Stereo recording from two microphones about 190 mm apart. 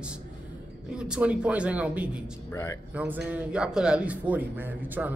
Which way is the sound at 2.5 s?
15° left (ahead or behind).